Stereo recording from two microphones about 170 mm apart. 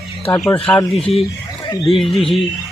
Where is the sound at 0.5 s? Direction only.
35° left (ahead or behind).